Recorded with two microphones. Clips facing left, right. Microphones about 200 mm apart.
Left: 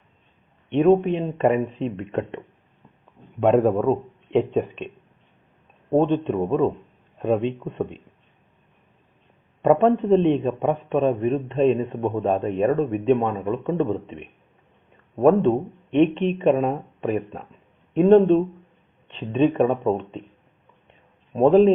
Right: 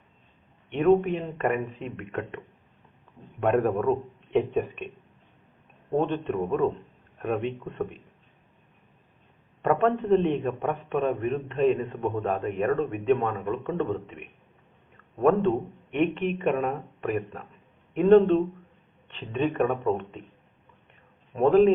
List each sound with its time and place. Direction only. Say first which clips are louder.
0.7 s a man's voice: left 4 dB; 20° left (ahead or behind)
3.4 s a man's voice: left 5 dB; 25° left (ahead or behind)
6.0 s a man's voice: left 6 dB; 20° left (ahead or behind)
9.6 s a man's voice: left 6 dB; 20° left (ahead or behind)
21.3 s a man's voice: left 4 dB; 20° left (ahead or behind)